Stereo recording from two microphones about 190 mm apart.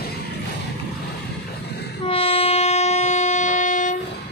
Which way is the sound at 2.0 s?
30° left (ahead or behind).